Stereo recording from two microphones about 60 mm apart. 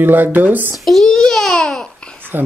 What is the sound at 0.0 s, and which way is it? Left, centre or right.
Speech, right.